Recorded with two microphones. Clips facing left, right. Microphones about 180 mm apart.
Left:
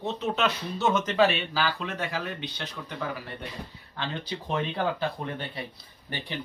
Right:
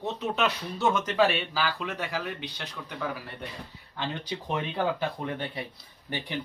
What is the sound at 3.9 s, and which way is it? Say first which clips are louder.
Speech: even; 10° right (ahead or behind).